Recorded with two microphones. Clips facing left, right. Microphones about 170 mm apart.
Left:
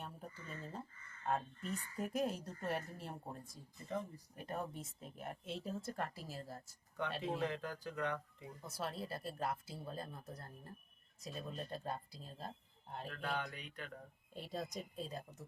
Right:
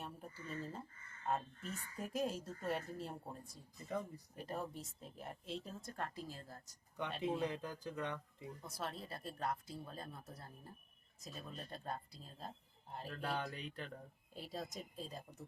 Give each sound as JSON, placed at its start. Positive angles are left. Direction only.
{"t": 0.0, "sound": "a sound", "side_deg": 0}
{"t": 1.3, "sound": "a woman's voice", "side_deg": 0}
{"t": 4.4, "sound": "a woman's voice", "side_deg": 0}
{"t": 7.2, "sound": "speech", "side_deg": -20}
{"t": 8.6, "sound": "a woman's voice", "side_deg": 0}
{"t": 13.1, "sound": "speech", "side_deg": -35}
{"t": 14.3, "sound": "a woman's voice", "side_deg": 0}